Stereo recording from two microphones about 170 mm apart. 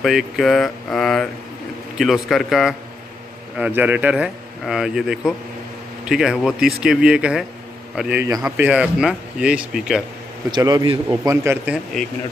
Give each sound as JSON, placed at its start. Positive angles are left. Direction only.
{"t": 0.0, "sound": "speech", "side_deg": 0}
{"t": 10.5, "sound": "speech", "side_deg": -25}
{"t": 11.4, "sound": "speech", "side_deg": -10}